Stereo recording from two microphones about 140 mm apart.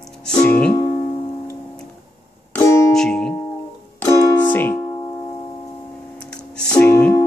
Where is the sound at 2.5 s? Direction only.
20° left (ahead or behind).